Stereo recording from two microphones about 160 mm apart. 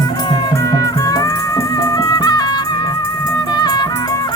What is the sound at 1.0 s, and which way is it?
Music, 20° left (ahead or behind).